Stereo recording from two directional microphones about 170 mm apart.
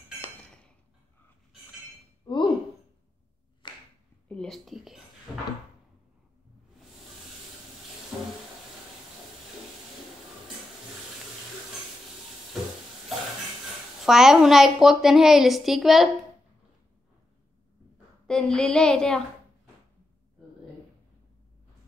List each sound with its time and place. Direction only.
2.3 s chink: 25° left (ahead or behind)
3.6 s clapping: 30° left (ahead or behind)
4.3 s a woman's voice: 5° left (ahead or behind)
8.1 s a sound: centre (ahead or behind)
14.0 s a woman's voice: 5° right (ahead or behind)
18.2 s a woman's voice: 5° left (ahead or behind)